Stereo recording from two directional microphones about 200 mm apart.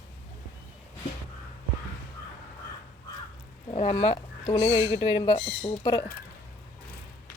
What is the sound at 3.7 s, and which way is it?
Speech, 30° left (ahead or behind).